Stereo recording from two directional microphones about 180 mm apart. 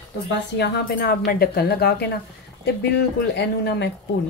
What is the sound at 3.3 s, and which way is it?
Speech, 75° left (ahead or behind).